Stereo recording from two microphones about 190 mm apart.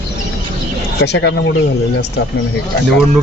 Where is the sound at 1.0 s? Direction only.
65° left (ahead or behind).